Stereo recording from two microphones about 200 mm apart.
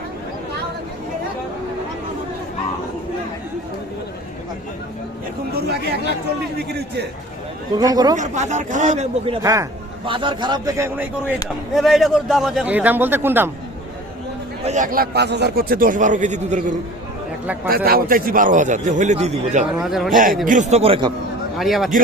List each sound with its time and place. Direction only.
7.7 s a man's voice: 20° right (ahead or behind)
8.1 s a man's voice: 35° right (ahead or behind)
9.4 s a man's voice: 15° right (ahead or behind)
14.6 s a man's voice: 35° right (ahead or behind)
17.7 s a man's voice: 50° right (ahead or behind)
19.8 s a man's voice: centre (ahead or behind)
20.4 s a man's voice: 40° right (ahead or behind)
21.6 s a man's voice: centre (ahead or behind)